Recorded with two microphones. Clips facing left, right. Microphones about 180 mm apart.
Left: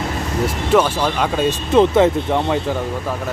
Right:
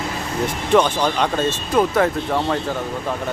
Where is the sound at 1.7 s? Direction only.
25° left (ahead or behind).